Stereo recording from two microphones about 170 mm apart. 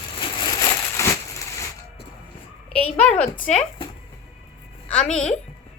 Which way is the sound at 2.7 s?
10° left (ahead or behind).